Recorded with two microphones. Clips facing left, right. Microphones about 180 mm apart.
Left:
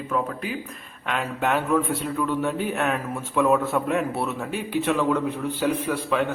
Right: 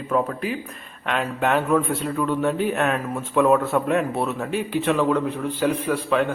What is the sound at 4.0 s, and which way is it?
Speech, 15° right (ahead or behind).